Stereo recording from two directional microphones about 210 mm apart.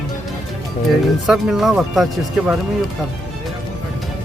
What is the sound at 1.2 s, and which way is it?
Speech, centre (ahead or behind).